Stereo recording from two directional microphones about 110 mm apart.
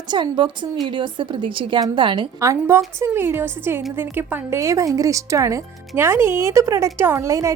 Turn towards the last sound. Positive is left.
turn(degrees=-30)  # may be behind; listen again after turning